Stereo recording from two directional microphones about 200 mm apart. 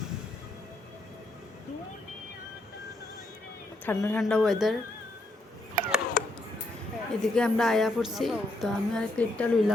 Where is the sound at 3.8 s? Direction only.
10° left (ahead or behind).